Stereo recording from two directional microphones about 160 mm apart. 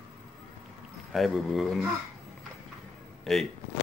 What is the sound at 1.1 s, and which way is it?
Speech, centre (ahead or behind).